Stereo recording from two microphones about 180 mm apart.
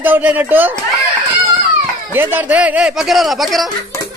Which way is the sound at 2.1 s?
10° right (ahead or behind).